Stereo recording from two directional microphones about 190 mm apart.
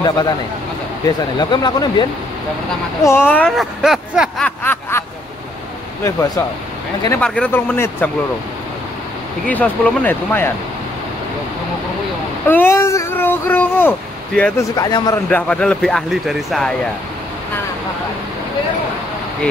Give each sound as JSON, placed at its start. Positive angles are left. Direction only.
{"t": 0.0, "sound": "speech", "side_deg": 20}
{"t": 4.5, "sound": "snicker", "side_deg": 10}
{"t": 7.2, "sound": "speech", "side_deg": 5}
{"t": 9.5, "sound": "speech", "side_deg": 10}
{"t": 12.4, "sound": "speech", "side_deg": 10}
{"t": 14.8, "sound": "speech", "side_deg": 20}
{"t": 15.2, "sound": "speech", "side_deg": 5}